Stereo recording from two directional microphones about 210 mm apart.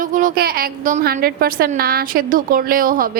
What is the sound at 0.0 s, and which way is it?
A woman's voice, 40° right (ahead or behind).